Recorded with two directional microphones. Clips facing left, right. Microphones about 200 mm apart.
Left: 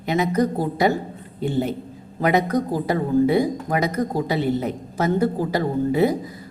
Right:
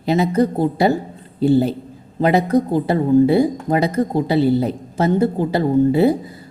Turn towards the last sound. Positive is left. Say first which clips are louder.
# right 5 dB
turn(degrees=-30)  # may be behind; listen again after turning